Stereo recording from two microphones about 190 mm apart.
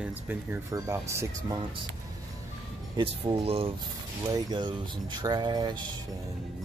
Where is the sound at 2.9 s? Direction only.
30° right (ahead or behind).